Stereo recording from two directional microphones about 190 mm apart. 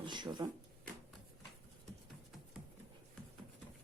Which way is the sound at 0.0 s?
25° right (ahead or behind).